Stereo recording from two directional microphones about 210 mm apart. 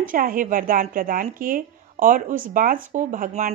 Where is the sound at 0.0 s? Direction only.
40° right (ahead or behind).